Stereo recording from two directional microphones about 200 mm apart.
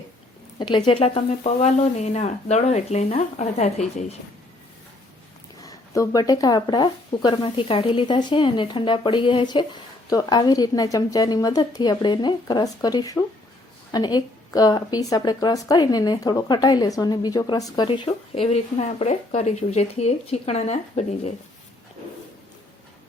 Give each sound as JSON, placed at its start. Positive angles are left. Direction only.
{"t": 0.6, "sound": "speech", "side_deg": 25}
{"t": 5.6, "sound": "speech", "side_deg": 15}